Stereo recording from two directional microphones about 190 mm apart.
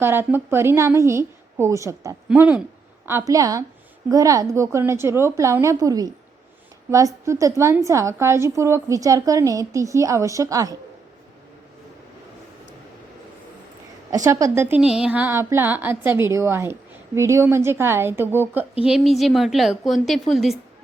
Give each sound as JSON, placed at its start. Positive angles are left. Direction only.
{"t": 0.0, "sound": "a woman's voice", "side_deg": -10}
{"t": 14.3, "sound": "a woman's voice", "side_deg": -15}